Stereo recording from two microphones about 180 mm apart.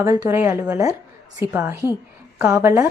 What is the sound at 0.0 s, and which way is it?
A woman's voice, 15° right (ahead or behind).